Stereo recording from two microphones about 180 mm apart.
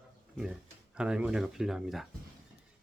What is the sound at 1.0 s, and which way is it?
Speech, 5° right (ahead or behind).